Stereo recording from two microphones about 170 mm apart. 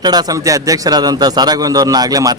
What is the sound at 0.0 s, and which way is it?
A man's voice, 25° right (ahead or behind).